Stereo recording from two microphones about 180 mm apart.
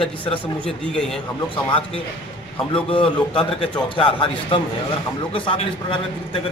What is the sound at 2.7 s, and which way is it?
A man's voice, 30° left (ahead or behind).